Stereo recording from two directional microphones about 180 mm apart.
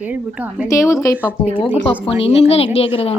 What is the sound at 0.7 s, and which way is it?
Speech, 15° left (ahead or behind).